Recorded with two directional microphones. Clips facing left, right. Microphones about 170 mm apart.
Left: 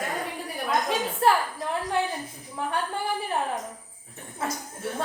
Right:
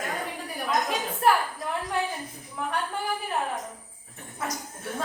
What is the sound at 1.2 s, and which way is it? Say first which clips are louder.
Speech: left 1 dB; 30° left (ahead or behind).